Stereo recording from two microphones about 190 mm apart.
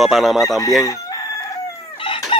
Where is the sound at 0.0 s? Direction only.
Centre (ahead or behind).